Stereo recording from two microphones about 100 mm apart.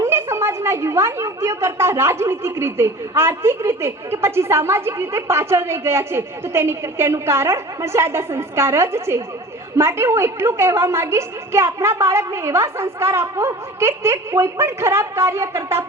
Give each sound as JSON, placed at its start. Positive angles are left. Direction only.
{"t": 0.0, "sound": "a woman's voice", "side_deg": -25}